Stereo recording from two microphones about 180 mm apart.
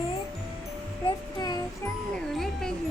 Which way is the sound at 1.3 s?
20° left (ahead or behind).